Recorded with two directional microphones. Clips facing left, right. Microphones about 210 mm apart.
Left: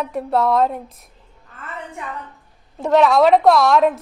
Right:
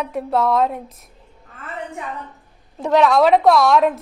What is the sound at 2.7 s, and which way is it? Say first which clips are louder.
A woman's voice: left 1 dB; centre (ahead or behind).